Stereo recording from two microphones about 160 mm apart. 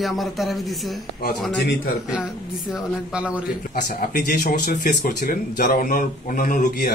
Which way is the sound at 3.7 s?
65° left (ahead or behind).